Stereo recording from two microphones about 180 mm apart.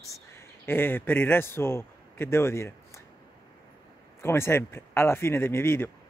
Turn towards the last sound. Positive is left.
turn(degrees=15)  # may be behind; listen again after turning